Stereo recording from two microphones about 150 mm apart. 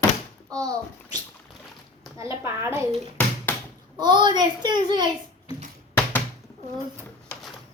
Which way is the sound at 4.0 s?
30° right (ahead or behind).